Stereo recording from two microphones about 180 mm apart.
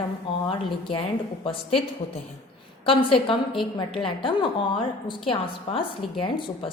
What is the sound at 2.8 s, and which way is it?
A woman's voice, 30° left (ahead or behind).